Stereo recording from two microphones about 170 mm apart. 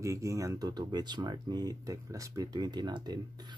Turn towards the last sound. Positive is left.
turn(degrees=-25)  # may be behind; listen again after turning